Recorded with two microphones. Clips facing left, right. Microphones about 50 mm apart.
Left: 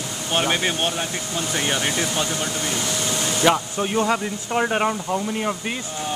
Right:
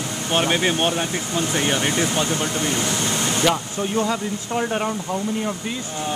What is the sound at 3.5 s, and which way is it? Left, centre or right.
Speech, left.